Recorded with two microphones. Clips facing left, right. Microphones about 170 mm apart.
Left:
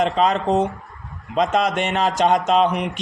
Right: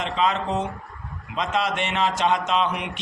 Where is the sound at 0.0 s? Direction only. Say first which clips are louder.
Left 5 dB; 45° left (ahead or behind).